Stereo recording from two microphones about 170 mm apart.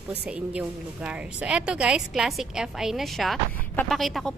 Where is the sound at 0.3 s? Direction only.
5° right (ahead or behind).